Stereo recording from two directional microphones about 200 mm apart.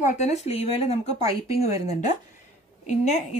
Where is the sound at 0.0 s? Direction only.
35° left (ahead or behind).